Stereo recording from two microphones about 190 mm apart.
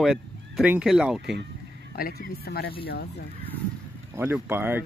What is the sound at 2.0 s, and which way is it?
Speech, 55° left (ahead or behind).